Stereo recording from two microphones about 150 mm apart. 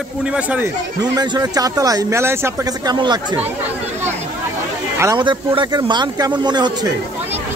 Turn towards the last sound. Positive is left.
turn(degrees=-30)  # may be behind; listen again after turning